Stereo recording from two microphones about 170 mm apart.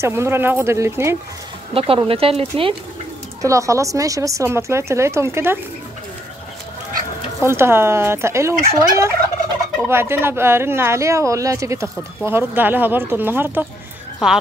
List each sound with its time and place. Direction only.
0.0 s speech: 15° right (ahead or behind)
1.7 s speech: 35° right (ahead or behind)
3.4 s speech: 20° right (ahead or behind)
7.4 s a woman's voice: 15° right (ahead or behind)